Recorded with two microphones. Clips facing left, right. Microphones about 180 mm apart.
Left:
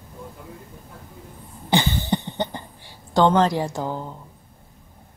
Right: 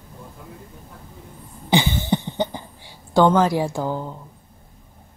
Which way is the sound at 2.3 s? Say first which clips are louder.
Right 3 dB; 10° right (ahead or behind).